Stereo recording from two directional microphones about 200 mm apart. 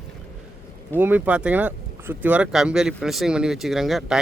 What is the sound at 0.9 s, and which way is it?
Speech, 10° right (ahead or behind).